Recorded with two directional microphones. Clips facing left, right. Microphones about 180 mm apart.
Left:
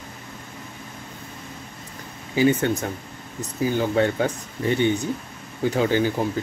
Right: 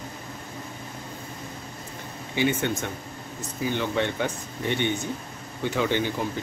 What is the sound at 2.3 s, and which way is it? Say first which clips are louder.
Speech: left 5 dB; 40° left (ahead or behind).